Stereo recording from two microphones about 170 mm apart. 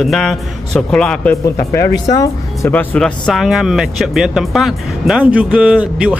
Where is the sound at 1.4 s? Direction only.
20° left (ahead or behind).